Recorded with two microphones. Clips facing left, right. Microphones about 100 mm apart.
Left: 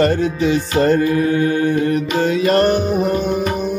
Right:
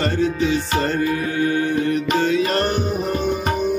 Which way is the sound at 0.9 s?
40° left (ahead or behind).